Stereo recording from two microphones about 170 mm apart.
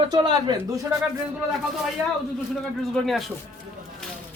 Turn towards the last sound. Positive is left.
turn(degrees=0)  # may be behind; listen again after turning